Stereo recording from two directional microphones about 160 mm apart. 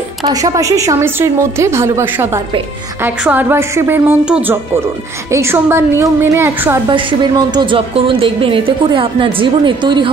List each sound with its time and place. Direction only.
0.3 s a woman's voice: 20° right (ahead or behind)
6.9 s speech: 30° right (ahead or behind)